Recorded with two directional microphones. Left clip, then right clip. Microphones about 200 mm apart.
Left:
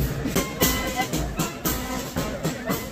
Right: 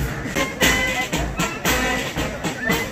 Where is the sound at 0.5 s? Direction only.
55° left (ahead or behind).